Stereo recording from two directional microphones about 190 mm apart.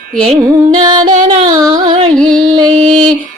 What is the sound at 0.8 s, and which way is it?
Music, 20° right (ahead or behind).